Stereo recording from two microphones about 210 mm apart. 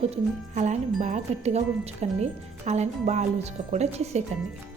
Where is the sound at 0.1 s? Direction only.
35° right (ahead or behind).